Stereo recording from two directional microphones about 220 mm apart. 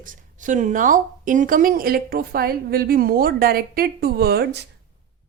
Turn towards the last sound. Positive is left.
turn(degrees=-45)  # may be behind; listen again after turning